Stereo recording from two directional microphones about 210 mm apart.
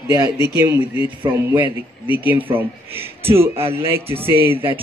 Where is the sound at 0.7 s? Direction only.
25° left (ahead or behind).